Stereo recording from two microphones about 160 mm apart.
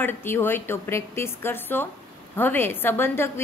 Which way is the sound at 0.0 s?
15° left (ahead or behind).